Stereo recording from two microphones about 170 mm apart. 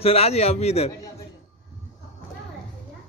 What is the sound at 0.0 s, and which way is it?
Speech, 35° left (ahead or behind).